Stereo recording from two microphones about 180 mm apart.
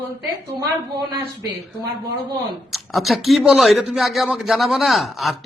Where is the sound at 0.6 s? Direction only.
20° right (ahead or behind).